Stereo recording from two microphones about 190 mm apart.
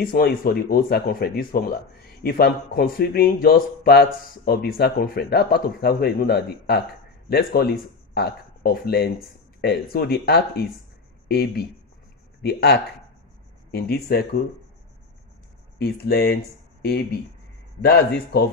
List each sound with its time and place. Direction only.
0.0 s a man's voice: 50° left (ahead or behind)
15.8 s speech: 55° left (ahead or behind)